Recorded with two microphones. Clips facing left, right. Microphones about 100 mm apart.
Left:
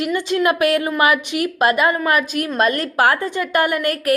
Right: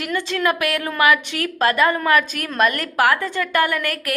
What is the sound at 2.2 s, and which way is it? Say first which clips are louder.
A woman's voice: left 1 dB; 20° left (ahead or behind).